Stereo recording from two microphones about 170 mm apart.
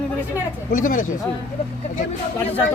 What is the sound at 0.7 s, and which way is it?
Speech, 50° left (ahead or behind).